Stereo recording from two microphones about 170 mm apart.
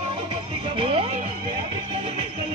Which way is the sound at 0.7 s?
35° right (ahead or behind).